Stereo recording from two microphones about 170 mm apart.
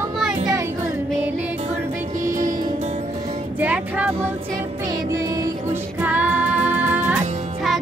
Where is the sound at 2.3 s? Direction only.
50° right (ahead or behind).